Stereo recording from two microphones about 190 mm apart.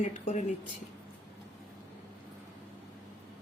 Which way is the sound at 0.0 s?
40° left (ahead or behind).